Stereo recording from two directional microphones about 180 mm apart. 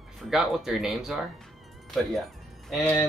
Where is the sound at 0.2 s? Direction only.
Centre (ahead or behind).